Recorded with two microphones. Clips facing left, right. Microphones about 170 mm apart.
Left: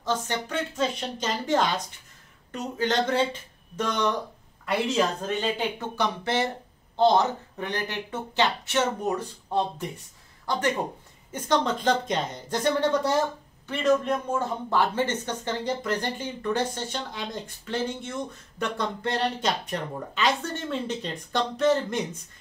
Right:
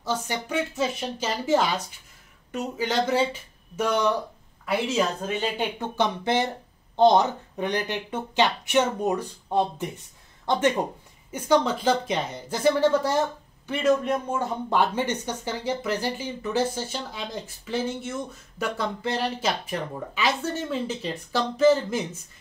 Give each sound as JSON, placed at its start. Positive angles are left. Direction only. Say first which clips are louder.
{"t": 0.0, "sound": "speech", "louder": "even", "side_deg": -10}
{"t": 5.8, "sound": "speech", "louder": "right 2 dB", "side_deg": -20}
{"t": 11.3, "sound": "speech", "louder": "right 3 dB", "side_deg": -10}
{"t": 14.7, "sound": "speech", "louder": "right 1 dB", "side_deg": -15}